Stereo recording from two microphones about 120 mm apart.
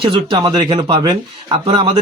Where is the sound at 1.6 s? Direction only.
50° right (ahead or behind).